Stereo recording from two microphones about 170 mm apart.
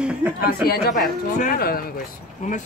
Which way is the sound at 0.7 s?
65° left (ahead or behind).